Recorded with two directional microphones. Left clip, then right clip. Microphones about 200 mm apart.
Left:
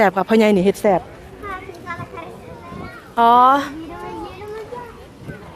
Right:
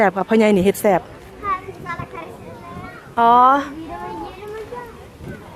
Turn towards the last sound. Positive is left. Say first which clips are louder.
# even
turn(degrees=15)  # may be behind; listen again after turning